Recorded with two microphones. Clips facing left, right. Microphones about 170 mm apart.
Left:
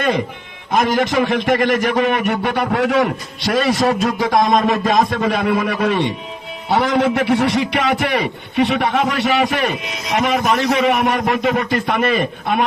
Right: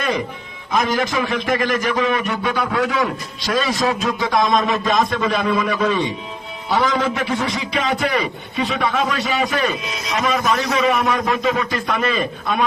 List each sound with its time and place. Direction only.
0.7 s a man's voice: 55° left (ahead or behind)
3.8 s a man's voice: 45° left (ahead or behind)